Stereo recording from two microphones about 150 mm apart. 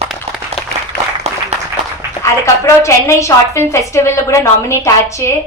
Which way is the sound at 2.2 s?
20° left (ahead or behind).